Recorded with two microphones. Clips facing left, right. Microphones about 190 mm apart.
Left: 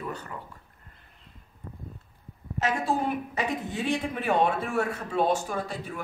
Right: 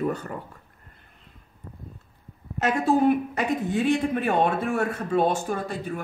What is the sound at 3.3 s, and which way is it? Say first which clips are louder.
A woman's voice: right 5 dB; 55° right (ahead or behind).